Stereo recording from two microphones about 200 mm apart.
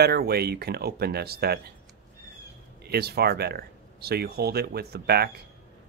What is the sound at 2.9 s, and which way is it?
Speech, 55° right (ahead or behind).